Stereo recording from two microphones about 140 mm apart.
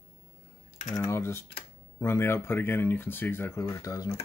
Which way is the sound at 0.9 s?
20° left (ahead or behind).